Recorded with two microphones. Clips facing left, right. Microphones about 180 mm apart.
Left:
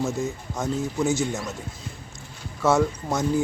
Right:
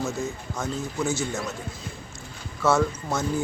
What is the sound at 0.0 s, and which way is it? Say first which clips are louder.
Speech: left 2 dB; 20° left (ahead or behind).